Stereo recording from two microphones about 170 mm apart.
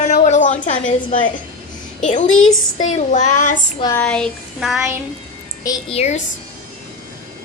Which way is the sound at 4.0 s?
5° left (ahead or behind).